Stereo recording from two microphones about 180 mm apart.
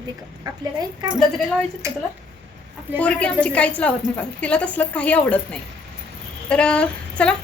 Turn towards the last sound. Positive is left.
turn(degrees=5)  # may be behind; listen again after turning